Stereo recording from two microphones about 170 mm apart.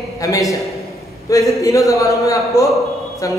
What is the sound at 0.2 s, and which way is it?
Speech, 20° left (ahead or behind).